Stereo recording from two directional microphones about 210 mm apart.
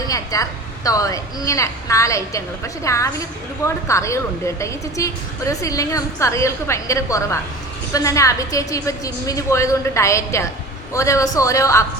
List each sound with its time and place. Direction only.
0.1 s a woman's voice: 15° left (ahead or behind)